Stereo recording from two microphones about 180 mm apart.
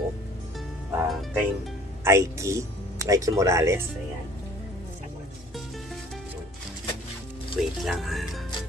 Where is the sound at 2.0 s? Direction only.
15° right (ahead or behind).